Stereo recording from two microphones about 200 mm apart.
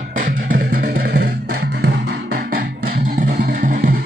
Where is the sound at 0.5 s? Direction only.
45° right (ahead or behind).